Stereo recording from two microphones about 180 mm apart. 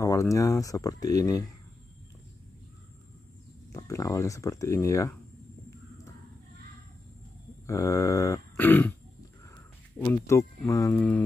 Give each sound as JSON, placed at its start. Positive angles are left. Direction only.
{"t": 0.0, "sound": "speech", "side_deg": 15}
{"t": 3.7, "sound": "speech", "side_deg": 15}
{"t": 7.6, "sound": "speech", "side_deg": 15}
{"t": 9.9, "sound": "speech", "side_deg": 15}